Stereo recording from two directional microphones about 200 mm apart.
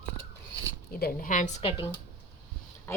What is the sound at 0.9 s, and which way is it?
Speech, 45° left (ahead or behind).